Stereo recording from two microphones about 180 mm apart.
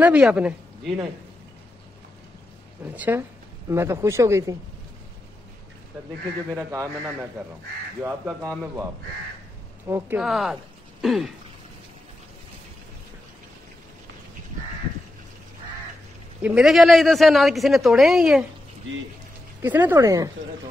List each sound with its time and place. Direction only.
0.0 s speech: 5° right (ahead or behind)
3.0 s a woman's voice: 10° right (ahead or behind)
6.5 s a man's voice: 15° right (ahead or behind)
9.8 s speech: 15° right (ahead or behind)
16.4 s a man's voice: 5° right (ahead or behind)
19.6 s a man's voice: 10° right (ahead or behind)